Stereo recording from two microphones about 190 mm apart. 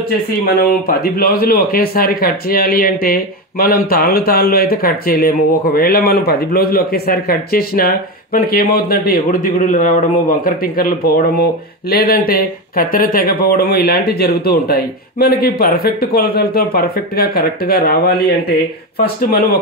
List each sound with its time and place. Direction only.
0.8 s a man's voice: 50° left (ahead or behind)